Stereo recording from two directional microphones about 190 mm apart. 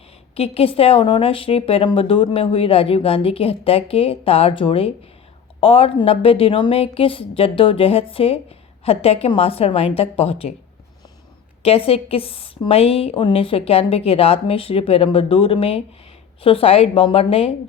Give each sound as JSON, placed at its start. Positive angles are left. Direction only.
{"t": 0.3, "sound": "a woman's voice", "side_deg": 30}
{"t": 11.6, "sound": "a woman's voice", "side_deg": 30}